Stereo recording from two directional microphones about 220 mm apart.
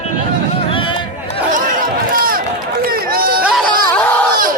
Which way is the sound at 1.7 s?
40° right (ahead or behind).